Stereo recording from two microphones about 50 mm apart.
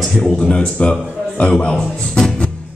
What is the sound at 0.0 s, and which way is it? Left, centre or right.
Speech, centre.